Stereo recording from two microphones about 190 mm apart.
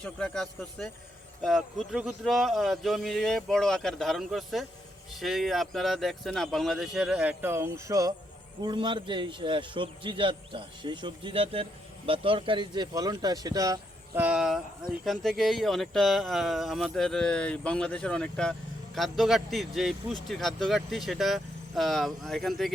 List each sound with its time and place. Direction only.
0.0 s speech: 5° left (ahead or behind); by 13.7 s 20° right (ahead or behind)
14.2 s speech: 5° right (ahead or behind)